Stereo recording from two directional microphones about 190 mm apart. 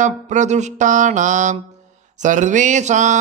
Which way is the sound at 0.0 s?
40° right (ahead or behind).